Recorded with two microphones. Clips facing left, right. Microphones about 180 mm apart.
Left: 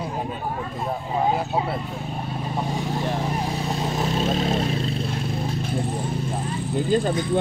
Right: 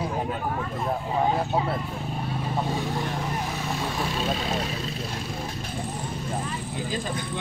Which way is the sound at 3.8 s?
20° left (ahead or behind).